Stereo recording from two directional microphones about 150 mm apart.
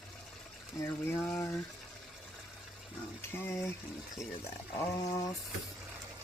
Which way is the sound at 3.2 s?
15° left (ahead or behind).